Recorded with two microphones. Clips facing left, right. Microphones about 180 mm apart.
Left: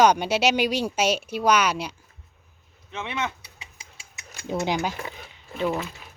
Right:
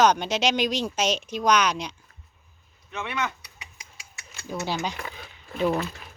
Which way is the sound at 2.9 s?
25° left (ahead or behind).